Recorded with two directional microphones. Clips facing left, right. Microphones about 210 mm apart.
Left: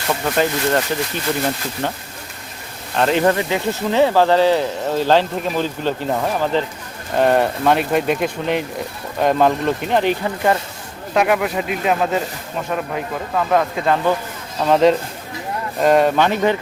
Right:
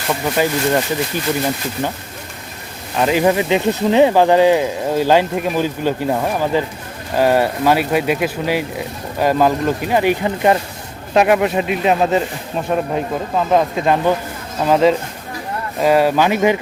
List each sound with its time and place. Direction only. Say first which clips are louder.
0.1 s speech: right 1 dB; 5° right (ahead or behind)
2.9 s speech: right 1 dB; 5° right (ahead or behind)
10.2 s speech: right 3 dB; 20° right (ahead or behind)
13.3 s speech: right 2 dB; 20° right (ahead or behind)
14.6 s speech: even; 5° right (ahead or behind)